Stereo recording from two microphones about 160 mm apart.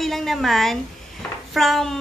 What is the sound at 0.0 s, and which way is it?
A woman's voice, centre (ahead or behind).